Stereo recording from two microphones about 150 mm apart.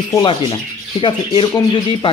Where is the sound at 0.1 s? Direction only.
30° left (ahead or behind).